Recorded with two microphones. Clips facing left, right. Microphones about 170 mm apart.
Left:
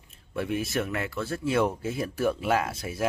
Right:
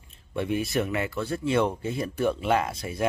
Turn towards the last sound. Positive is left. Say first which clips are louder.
# right 1 dB
turn(degrees=0)  # may be behind; listen again after turning